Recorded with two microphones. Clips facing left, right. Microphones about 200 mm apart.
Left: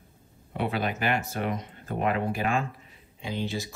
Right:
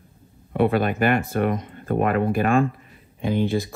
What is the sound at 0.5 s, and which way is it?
Speech, 55° right (ahead or behind).